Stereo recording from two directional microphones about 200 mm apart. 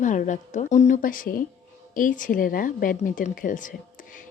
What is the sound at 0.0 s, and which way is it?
Speech, 40° left (ahead or behind).